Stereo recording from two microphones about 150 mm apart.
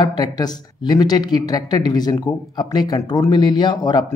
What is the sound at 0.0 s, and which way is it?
Speech, 30° left (ahead or behind).